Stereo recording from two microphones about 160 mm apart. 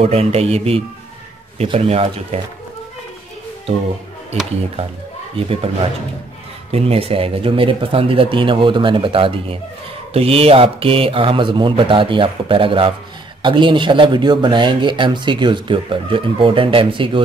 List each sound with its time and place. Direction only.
0.0 s a man's voice: 40° right (ahead or behind)
5.4 s a man's voice: 35° right (ahead or behind)
6.7 s a man's voice: 35° right (ahead or behind)